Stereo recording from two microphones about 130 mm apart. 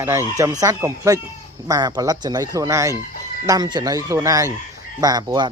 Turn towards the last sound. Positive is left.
turn(degrees=-30)  # may be behind; listen again after turning